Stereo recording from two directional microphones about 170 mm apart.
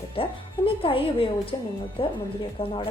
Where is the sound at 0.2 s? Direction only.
30° left (ahead or behind).